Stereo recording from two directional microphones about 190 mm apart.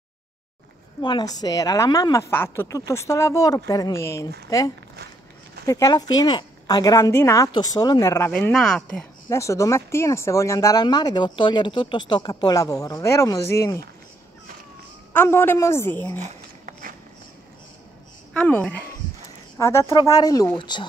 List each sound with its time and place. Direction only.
1.0 s speech: 20° left (ahead or behind); by 9.0 s 5° left (ahead or behind)
9.3 s speech: 15° left (ahead or behind)
15.1 s speech: 10° left (ahead or behind)
16.2 s a sound: 45° right (ahead or behind)
18.3 s speech: 5° left (ahead or behind); by 20.8 s 25° left (ahead or behind)